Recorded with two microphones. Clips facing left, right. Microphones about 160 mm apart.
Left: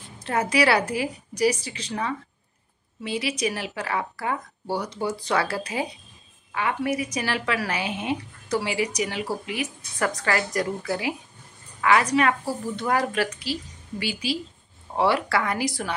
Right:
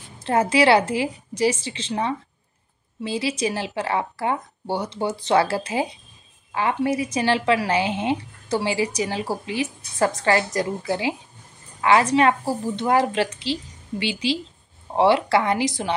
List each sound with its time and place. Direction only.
0.2 s speech: 30° right (ahead or behind)